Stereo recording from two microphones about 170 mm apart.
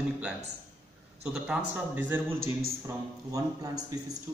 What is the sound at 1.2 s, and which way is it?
A man's voice, 5° right (ahead or behind).